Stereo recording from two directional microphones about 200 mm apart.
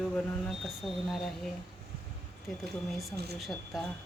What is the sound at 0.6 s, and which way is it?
Speech, centre (ahead or behind).